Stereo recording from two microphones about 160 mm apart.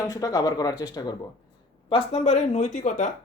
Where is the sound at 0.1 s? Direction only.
20° left (ahead or behind).